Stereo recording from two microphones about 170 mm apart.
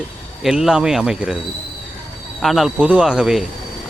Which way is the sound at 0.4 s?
Centre (ahead or behind).